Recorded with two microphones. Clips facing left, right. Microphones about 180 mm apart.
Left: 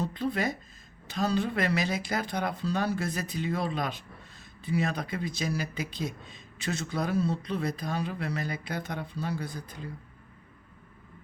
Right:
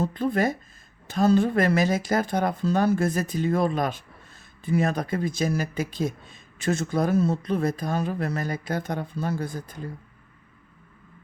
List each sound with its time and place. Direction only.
0.0 s speech: 50° right (ahead or behind)